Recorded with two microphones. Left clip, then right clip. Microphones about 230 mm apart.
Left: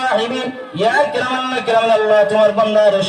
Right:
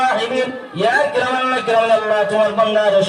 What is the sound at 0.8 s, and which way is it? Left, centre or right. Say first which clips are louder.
A man's voice: left 1 dB; left.